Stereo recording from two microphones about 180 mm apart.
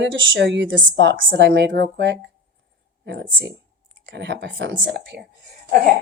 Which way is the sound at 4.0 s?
75° right (ahead or behind).